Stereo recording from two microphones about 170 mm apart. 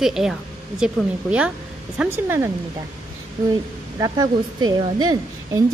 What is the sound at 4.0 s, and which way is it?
Speech, 20° right (ahead or behind).